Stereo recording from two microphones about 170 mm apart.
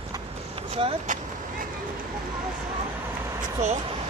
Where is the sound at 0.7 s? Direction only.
40° right (ahead or behind).